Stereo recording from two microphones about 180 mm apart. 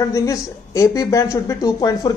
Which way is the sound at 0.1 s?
20° left (ahead or behind).